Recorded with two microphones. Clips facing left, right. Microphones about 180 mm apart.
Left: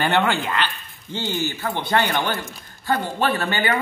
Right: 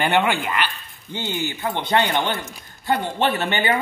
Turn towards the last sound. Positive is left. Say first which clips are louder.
# right 1 dB
turn(degrees=-20)  # may be behind; listen again after turning